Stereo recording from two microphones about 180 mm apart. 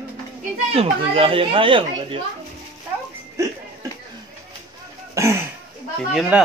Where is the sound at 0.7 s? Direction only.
30° right (ahead or behind).